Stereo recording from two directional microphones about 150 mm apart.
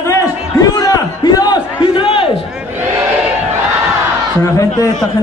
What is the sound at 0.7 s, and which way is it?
Crowd, 25° left (ahead or behind).